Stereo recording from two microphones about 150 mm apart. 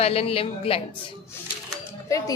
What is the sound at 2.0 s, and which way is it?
Speech, 20° left (ahead or behind).